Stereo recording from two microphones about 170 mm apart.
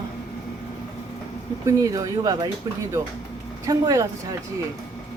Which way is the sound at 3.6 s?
20° right (ahead or behind).